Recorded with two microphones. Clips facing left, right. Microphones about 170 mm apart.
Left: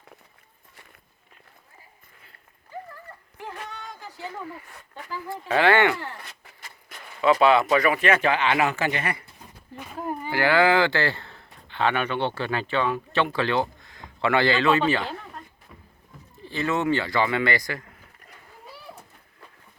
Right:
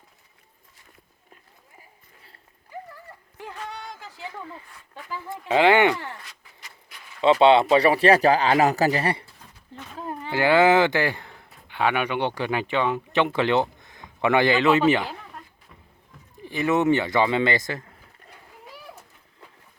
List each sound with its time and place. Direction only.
4.2 s speech: 20° right (ahead or behind)
6.2 s vehicle: 50° left (ahead or behind)
7.2 s speech: 25° right (ahead or behind)
9.2 s a sound: 10° left (ahead or behind)
10.3 s a man's voice: 20° right (ahead or behind)
16.4 s a man's voice: 15° right (ahead or behind)